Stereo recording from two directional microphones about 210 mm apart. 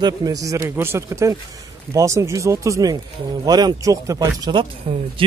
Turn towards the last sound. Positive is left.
turn(degrees=-25)  # may be behind; listen again after turning